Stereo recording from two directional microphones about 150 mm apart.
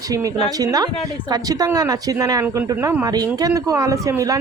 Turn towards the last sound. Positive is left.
turn(degrees=-20)  # may be behind; listen again after turning